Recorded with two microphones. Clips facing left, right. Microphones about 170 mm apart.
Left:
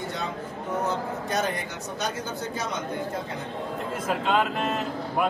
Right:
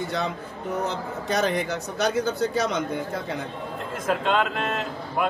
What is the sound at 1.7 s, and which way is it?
Speech, 80° right.